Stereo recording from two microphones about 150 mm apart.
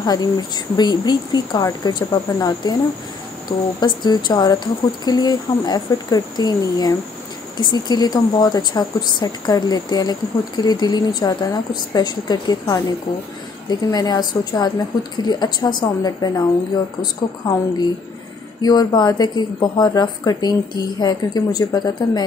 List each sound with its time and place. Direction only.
0.0 s speech: 25° left (ahead or behind)
13.8 s speech: 25° left (ahead or behind)